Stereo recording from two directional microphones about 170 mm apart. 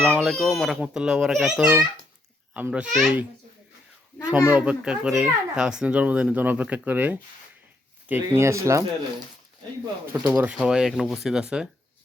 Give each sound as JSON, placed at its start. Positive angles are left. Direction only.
{"t": 0.2, "sound": "a child's voice", "side_deg": 0}
{"t": 10.1, "sound": "speech", "side_deg": -10}